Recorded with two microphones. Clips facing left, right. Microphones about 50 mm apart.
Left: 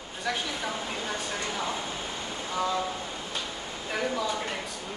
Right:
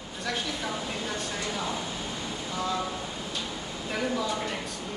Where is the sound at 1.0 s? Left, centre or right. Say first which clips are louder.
Even; centre.